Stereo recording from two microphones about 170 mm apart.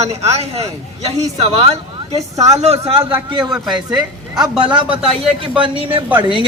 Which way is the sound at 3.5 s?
5° right (ahead or behind).